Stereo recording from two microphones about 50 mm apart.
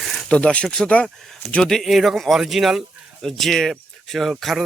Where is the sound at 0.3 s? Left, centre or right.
Left.